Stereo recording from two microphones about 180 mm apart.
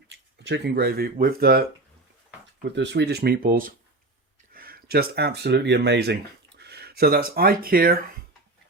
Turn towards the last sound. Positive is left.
turn(degrees=-55)  # may be behind; listen again after turning